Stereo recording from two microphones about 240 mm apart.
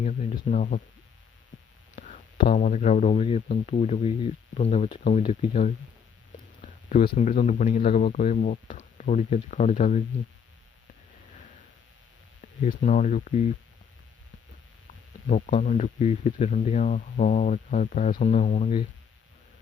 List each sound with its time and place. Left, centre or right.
0.0 s speech: left
2.0 s speech: left
12.6 s speech: left
15.3 s speech: left